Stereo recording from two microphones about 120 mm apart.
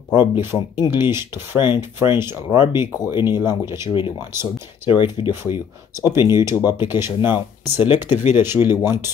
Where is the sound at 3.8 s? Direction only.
40° left (ahead or behind).